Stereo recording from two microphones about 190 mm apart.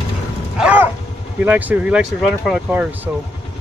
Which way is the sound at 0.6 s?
5° right (ahead or behind).